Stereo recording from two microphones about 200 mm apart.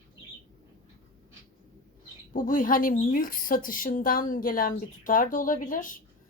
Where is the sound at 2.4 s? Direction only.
40° left (ahead or behind).